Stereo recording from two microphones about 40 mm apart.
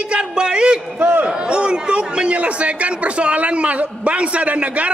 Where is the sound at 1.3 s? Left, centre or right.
Right.